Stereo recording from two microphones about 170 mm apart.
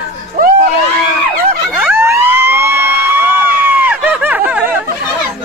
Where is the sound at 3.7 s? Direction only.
10° right (ahead or behind).